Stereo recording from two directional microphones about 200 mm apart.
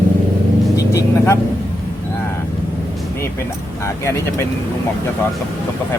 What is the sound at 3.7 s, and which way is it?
Speech, 15° left (ahead or behind).